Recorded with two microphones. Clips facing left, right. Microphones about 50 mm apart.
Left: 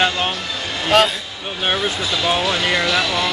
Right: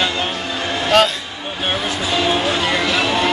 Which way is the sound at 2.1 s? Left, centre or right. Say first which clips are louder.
Right 2 dB; right.